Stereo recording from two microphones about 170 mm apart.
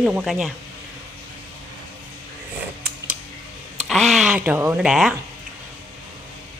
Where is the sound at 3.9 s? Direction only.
Centre (ahead or behind).